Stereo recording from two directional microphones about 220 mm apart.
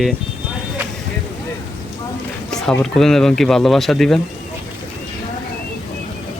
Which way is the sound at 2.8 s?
Centre (ahead or behind).